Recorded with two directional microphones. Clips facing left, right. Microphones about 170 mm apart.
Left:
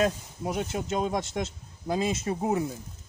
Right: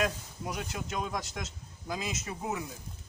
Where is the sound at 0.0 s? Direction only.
25° left (ahead or behind).